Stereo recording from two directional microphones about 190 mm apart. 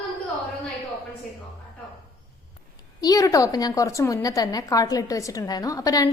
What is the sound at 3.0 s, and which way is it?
A woman's voice, 20° left (ahead or behind).